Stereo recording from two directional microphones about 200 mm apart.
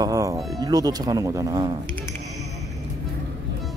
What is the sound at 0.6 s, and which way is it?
Speech, 20° right (ahead or behind).